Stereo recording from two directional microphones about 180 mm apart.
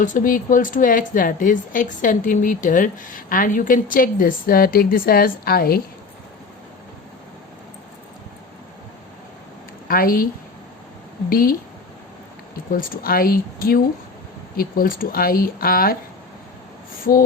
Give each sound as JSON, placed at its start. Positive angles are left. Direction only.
{"t": 0.0, "sound": "speech", "side_deg": 50}
{"t": 9.9, "sound": "speech", "side_deg": 55}
{"t": 11.3, "sound": "speech", "side_deg": 55}
{"t": 12.7, "sound": "speech", "side_deg": 50}